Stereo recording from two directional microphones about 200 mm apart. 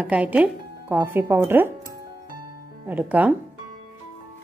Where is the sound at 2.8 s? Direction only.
10° right (ahead or behind).